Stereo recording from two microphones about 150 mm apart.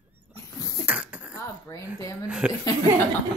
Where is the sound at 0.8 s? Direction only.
10° right (ahead or behind).